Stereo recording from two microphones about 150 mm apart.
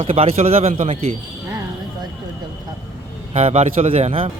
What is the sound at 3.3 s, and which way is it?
A man's voice, 45° right (ahead or behind).